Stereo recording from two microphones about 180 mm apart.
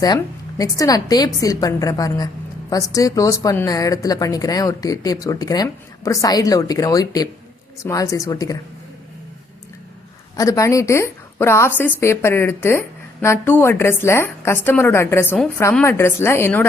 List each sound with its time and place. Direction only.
0.6 s a woman's voice: 20° left (ahead or behind)
10.3 s a woman's voice: 20° left (ahead or behind)